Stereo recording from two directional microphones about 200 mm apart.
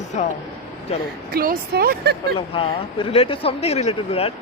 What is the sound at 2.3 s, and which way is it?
Speech, 25° left (ahead or behind).